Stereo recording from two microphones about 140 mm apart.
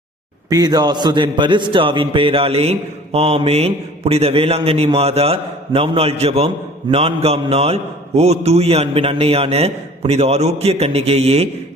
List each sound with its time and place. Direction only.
0.5 s a man's voice: 30° right (ahead or behind); by 11.4 s 45° right (ahead or behind)